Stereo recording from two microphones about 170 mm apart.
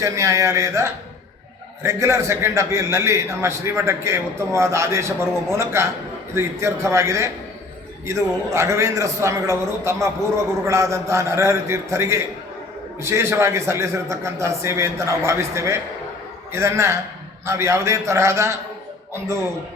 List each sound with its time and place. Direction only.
0.0 s a man's voice: 15° right (ahead or behind)
8.5 s a man's voice: 15° right (ahead or behind)